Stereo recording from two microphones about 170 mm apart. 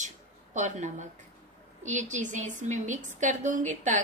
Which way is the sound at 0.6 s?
45° right (ahead or behind).